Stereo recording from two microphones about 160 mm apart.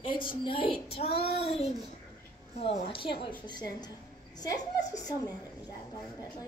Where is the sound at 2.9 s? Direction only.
35° left (ahead or behind).